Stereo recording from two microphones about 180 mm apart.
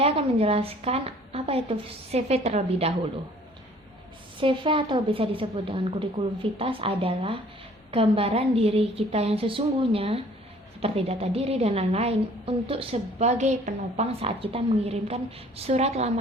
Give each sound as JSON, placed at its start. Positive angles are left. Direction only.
{"t": 0.0, "sound": "a woman's voice", "side_deg": -35}
{"t": 4.4, "sound": "a woman's voice", "side_deg": -30}